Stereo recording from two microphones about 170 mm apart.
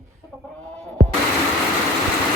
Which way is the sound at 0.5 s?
5° left (ahead or behind).